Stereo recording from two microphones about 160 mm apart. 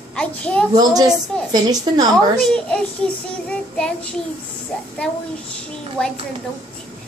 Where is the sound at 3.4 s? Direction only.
5° left (ahead or behind).